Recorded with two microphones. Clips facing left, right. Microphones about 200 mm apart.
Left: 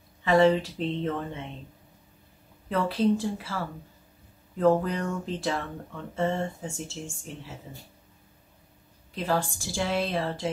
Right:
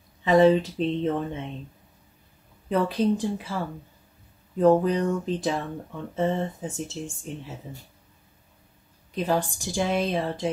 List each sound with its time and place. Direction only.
0.2 s speech: 20° right (ahead or behind)
2.7 s a woman's voice: 20° right (ahead or behind)
9.1 s a woman's voice: 20° right (ahead or behind)